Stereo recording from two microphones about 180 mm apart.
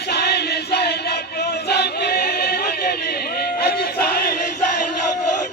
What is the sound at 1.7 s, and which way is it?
Choir, 65° left (ahead or behind).